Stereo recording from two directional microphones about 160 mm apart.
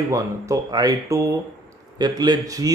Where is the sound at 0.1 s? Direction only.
20° right (ahead or behind).